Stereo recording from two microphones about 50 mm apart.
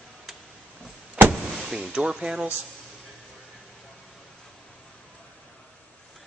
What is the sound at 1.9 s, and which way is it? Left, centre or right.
Speech, centre.